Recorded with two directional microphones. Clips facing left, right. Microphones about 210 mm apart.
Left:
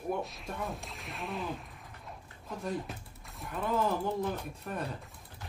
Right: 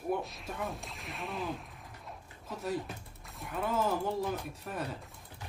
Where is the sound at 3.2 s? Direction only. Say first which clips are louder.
Even; centre (ahead or behind).